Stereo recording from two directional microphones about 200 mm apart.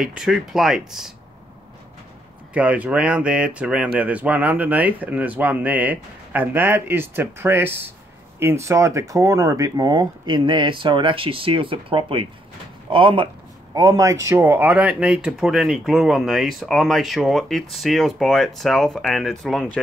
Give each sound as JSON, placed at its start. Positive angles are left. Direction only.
{"t": 0.0, "sound": "speech", "side_deg": 0}
{"t": 2.5, "sound": "speech", "side_deg": -5}